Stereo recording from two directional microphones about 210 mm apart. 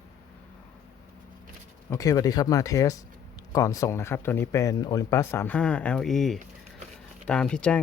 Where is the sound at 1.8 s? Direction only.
15° left (ahead or behind).